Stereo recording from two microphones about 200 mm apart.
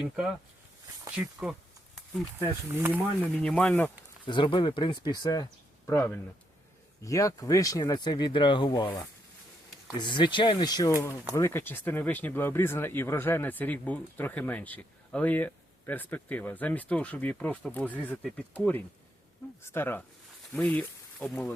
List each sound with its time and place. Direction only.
1.1 s speech: 5° right (ahead or behind)
3.4 s speech: 5° left (ahead or behind)
4.3 s speech: 25° left (ahead or behind); by 21.5 s 5° left (ahead or behind)